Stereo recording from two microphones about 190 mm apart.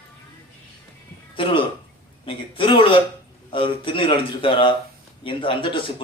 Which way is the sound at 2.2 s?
25° left (ahead or behind).